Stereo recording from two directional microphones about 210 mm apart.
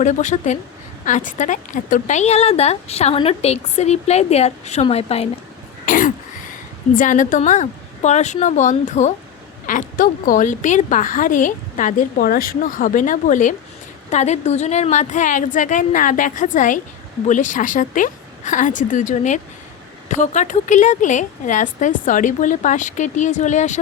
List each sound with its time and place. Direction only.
0.0 s a woman's voice: 35° left (ahead or behind)
5.8 s throat clearing: 40° left (ahead or behind)
6.9 s a woman's voice: 40° left (ahead or behind)